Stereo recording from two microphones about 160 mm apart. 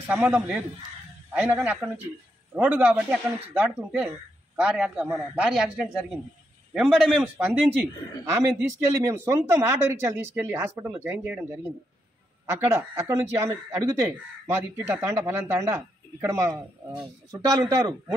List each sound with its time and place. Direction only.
0.0 s speech: 10° right (ahead or behind)
8.6 s speech: 15° right (ahead or behind)